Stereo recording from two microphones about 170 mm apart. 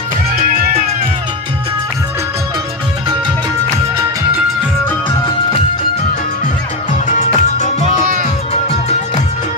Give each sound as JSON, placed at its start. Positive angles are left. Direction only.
{"t": 0.4, "sound": "music", "side_deg": -55}
{"t": 6.9, "sound": "music", "side_deg": 45}
{"t": 8.0, "sound": "music", "side_deg": -50}